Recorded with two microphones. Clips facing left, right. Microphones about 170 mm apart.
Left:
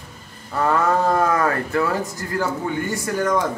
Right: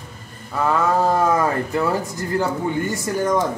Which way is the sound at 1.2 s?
15° right (ahead or behind).